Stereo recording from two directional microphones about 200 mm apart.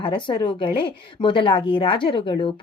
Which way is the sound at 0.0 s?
25° left (ahead or behind).